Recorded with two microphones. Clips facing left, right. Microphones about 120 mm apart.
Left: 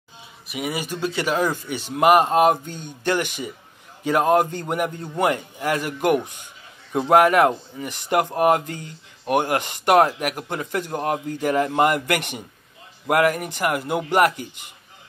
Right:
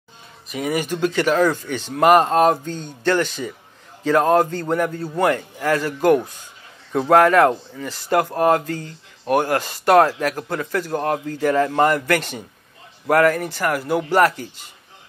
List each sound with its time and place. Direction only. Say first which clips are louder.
0.5 s speech: right 5 dB; 10° left (ahead or behind)